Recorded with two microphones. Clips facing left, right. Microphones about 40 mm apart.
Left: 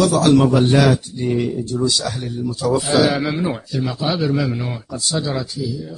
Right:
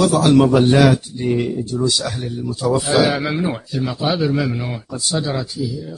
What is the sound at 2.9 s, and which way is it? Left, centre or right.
A man's voice, centre.